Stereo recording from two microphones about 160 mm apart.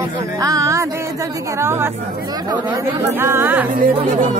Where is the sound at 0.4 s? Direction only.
20° right (ahead or behind).